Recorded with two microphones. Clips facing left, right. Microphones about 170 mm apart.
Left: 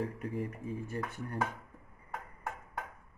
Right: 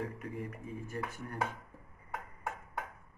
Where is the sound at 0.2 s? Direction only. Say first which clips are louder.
Left 4 dB; 30° left (ahead or behind).